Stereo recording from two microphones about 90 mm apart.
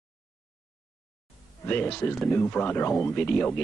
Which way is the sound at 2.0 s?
20° left (ahead or behind).